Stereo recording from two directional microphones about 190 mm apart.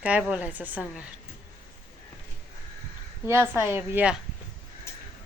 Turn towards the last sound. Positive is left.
turn(degrees=-10)  # may be behind; listen again after turning